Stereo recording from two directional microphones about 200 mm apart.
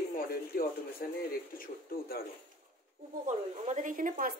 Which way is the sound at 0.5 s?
50° left (ahead or behind).